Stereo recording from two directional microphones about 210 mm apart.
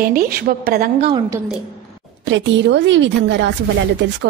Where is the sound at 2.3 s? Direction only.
60° right (ahead or behind).